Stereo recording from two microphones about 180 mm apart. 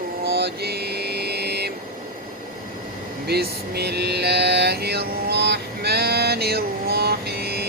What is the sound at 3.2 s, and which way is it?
Mantra, 65° right (ahead or behind).